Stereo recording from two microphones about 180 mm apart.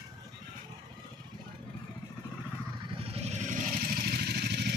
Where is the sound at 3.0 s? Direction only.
35° right (ahead or behind).